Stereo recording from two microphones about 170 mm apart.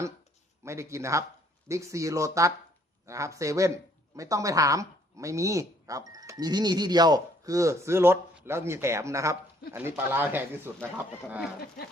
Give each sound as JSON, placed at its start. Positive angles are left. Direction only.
{"t": 0.6, "sound": "speech", "side_deg": -15}